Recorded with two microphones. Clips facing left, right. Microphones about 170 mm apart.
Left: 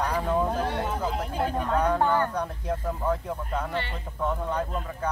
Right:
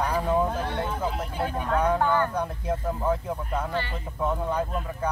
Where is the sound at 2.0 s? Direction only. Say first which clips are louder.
Right 1 dB; 5° right (ahead or behind).